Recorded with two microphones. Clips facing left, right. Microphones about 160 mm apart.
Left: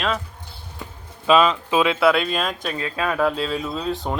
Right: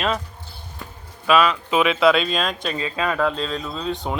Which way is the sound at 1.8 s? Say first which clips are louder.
Right 1 dB; 15° right (ahead or behind).